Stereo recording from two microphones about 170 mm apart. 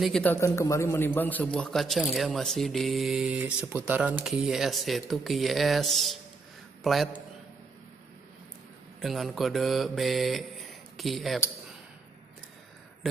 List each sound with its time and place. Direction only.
0.0 s a man's voice: 5° left (ahead or behind)
9.0 s mantra: centre (ahead or behind)